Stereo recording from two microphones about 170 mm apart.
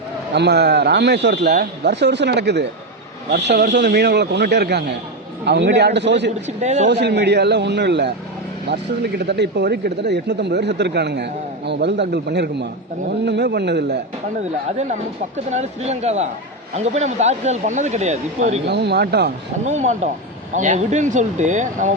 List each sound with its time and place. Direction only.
0.3 s a man's voice: 85° right
6.6 s speech: 40° right (ahead or behind)
6.8 s speech: 85° right
8.6 s speech: 75° right (ahead or behind)
15.4 s speech: 40° right (ahead or behind)
18.6 s speech: 80° right
19.6 s speech: 45° right (ahead or behind)